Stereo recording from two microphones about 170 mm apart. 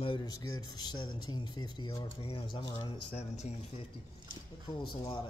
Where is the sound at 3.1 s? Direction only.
40° left (ahead or behind).